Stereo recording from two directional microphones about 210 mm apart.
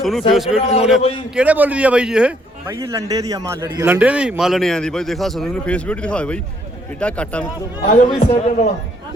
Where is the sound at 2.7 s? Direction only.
15° right (ahead or behind); by 7.4 s 5° left (ahead or behind).